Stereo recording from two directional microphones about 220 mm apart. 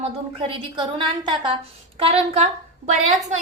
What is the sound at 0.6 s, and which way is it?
A woman's voice, 20° right (ahead or behind).